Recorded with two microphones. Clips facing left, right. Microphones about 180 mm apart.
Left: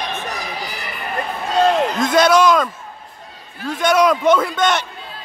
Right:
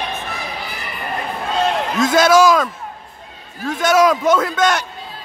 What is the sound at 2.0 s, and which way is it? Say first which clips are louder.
A man's voice: right 2 dB; 5° right (ahead or behind).